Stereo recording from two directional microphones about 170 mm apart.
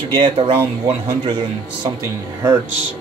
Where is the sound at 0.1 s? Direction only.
25° right (ahead or behind).